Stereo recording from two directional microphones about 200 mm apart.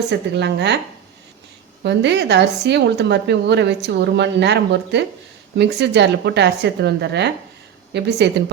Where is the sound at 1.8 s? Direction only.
60° right (ahead or behind).